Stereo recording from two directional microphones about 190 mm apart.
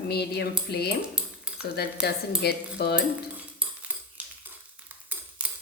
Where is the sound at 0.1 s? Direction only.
60° left (ahead or behind).